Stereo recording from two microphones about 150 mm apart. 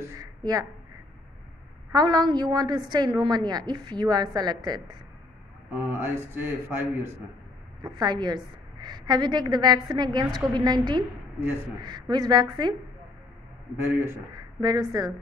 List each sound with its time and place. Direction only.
0.1 s a woman's voice: 25° right (ahead or behind)
1.9 s a woman's voice: 25° right (ahead or behind)
5.9 s a man's voice: 15° right (ahead or behind)
7.8 s a woman's voice: 30° right (ahead or behind)
13.8 s a woman's voice: 20° right (ahead or behind)